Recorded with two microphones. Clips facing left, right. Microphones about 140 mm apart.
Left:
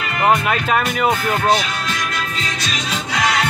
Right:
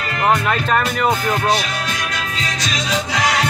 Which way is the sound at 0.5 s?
5° left (ahead or behind).